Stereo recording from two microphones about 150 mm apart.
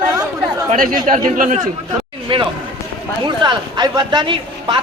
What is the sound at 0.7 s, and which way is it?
Speech, 65° right (ahead or behind).